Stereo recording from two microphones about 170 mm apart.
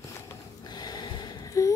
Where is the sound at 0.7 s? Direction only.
25° left (ahead or behind).